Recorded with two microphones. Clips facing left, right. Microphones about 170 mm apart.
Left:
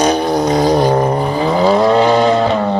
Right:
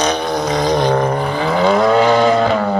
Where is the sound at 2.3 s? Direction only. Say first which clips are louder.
Left 1 dB; centre (ahead or behind).